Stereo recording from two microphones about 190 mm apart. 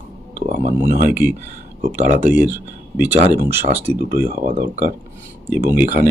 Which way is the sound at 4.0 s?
50° right (ahead or behind).